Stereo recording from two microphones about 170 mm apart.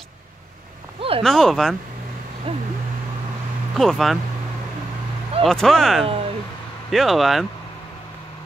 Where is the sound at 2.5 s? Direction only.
35° right (ahead or behind).